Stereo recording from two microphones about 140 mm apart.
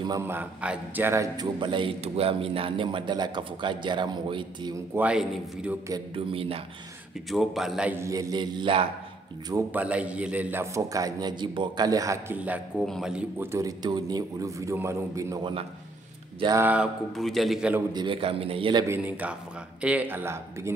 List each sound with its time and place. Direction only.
0.3 s a man's voice: 10° right (ahead or behind); by 4.7 s 35° right (ahead or behind)
4.7 s a man's voice: 10° right (ahead or behind)
6.1 s speech: 40° right (ahead or behind)
7.2 s a man's voice: centre (ahead or behind)
7.9 s a man's voice: 20° right (ahead or behind); by 8.8 s 35° right (ahead or behind)
9.7 s a man's voice: 10° right (ahead or behind)
12.4 s a man's voice: 10° right (ahead or behind)
13.4 s a man's voice: 20° right (ahead or behind)
16.5 s a man's voice: 10° right (ahead or behind)
17.1 s a man's voice: centre (ahead or behind)
17.9 s a man's voice: 35° right (ahead or behind)
18.9 s a man's voice: 10° right (ahead or behind)